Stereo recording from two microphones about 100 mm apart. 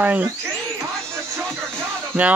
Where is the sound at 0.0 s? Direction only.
20° right (ahead or behind).